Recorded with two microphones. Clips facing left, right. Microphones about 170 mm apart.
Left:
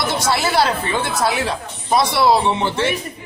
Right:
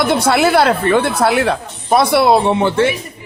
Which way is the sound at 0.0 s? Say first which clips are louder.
Right 7 dB; 60° right (ahead or behind).